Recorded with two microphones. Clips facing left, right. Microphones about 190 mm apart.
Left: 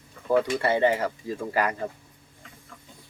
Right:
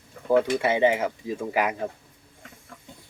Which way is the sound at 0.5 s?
15° right (ahead or behind).